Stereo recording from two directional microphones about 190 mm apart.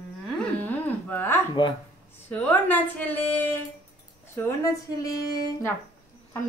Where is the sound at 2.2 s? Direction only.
10° left (ahead or behind).